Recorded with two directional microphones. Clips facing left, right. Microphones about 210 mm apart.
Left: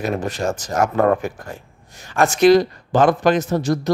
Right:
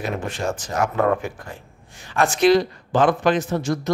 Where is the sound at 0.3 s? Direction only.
40° left (ahead or behind).